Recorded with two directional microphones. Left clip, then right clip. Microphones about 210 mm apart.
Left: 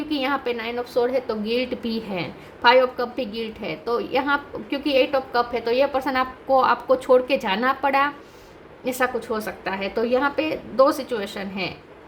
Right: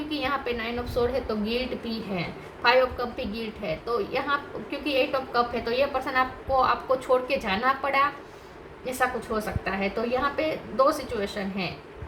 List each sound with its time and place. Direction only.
0.1 s a woman's voice: 50° left (ahead or behind)